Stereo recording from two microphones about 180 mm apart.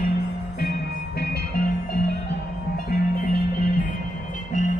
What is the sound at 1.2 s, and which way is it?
Music, 55° left (ahead or behind).